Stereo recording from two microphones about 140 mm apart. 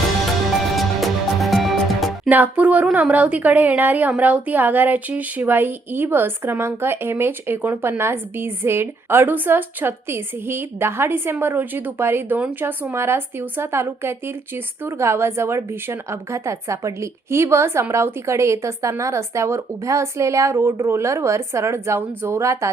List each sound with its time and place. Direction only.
0.8 s music: centre (ahead or behind)
2.3 s a woman's voice: 10° right (ahead or behind)